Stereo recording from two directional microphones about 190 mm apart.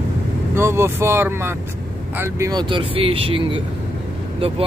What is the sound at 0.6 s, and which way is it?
Speech, 15° right (ahead or behind).